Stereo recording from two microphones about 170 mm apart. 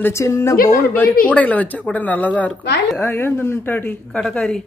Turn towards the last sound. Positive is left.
turn(degrees=5)  # may be behind; listen again after turning